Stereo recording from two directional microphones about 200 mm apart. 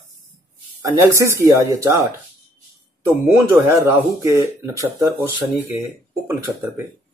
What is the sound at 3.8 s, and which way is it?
Speech, 15° right (ahead or behind).